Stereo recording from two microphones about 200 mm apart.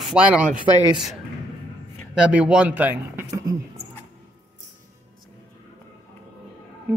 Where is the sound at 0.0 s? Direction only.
5° right (ahead or behind).